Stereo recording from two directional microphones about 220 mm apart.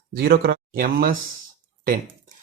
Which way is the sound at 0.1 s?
45° right (ahead or behind).